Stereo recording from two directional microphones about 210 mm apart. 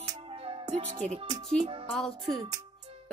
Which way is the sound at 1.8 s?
Centre (ahead or behind).